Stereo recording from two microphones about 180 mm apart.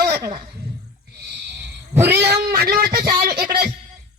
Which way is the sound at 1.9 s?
10° right (ahead or behind).